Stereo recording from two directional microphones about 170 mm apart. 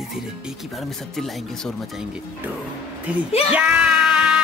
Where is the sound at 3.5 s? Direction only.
10° right (ahead or behind).